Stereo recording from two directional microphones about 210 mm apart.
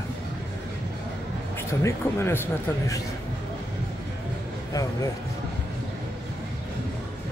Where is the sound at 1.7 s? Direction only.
15° left (ahead or behind).